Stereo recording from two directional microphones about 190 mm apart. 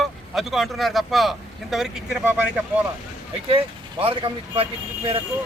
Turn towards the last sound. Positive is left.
turn(degrees=-30)  # may be behind; listen again after turning